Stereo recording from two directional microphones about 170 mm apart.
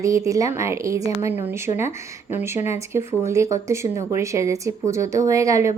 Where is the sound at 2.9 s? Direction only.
15° right (ahead or behind).